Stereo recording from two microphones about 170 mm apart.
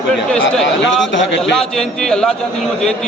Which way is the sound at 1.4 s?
5° left (ahead or behind).